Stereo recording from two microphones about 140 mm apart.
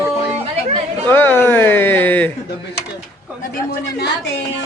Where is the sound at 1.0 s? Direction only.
15° left (ahead or behind).